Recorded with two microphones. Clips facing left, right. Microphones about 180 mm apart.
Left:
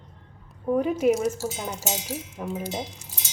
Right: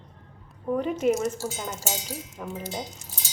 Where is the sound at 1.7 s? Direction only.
20° left (ahead or behind).